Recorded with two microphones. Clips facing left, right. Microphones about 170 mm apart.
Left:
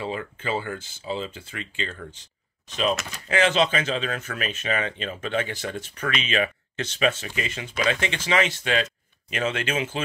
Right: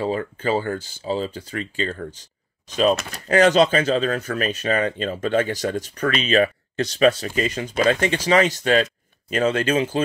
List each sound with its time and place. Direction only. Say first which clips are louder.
0.0 s speech: right 7 dB; 40° right (ahead or behind)